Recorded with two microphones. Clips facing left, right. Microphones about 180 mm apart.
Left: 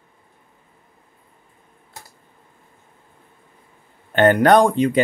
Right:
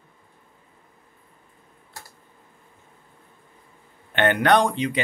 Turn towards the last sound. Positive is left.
turn(degrees=50)  # may be behind; listen again after turning